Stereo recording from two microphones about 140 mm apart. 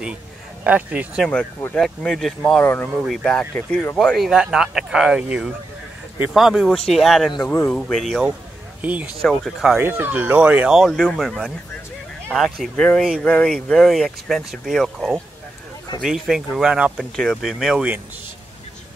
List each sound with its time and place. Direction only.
0.7 s speech: 10° right (ahead or behind)
1.2 s speech: 5° left (ahead or behind)
2.6 s speech: 15° left (ahead or behind)
3.0 s speech: 5° right (ahead or behind)
3.3 s speech: 5° left (ahead or behind)
7.4 s speech: 15° left (ahead or behind)
8.8 s speech: 10° right (ahead or behind)
9.2 s speech: centre (ahead or behind)
9.8 s speech: 15° right (ahead or behind)